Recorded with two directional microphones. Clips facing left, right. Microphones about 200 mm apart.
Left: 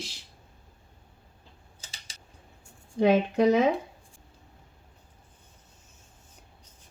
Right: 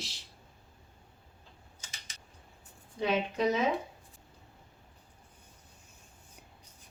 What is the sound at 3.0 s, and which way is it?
Speech, 50° left (ahead or behind).